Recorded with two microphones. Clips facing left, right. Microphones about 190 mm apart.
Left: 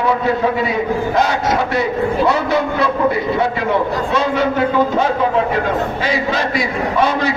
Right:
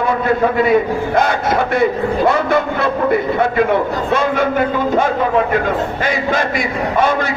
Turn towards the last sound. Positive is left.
turn(degrees=-50)  # may be behind; listen again after turning